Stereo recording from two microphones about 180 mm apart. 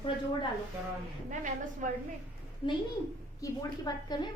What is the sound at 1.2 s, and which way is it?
Speech, 45° right (ahead or behind).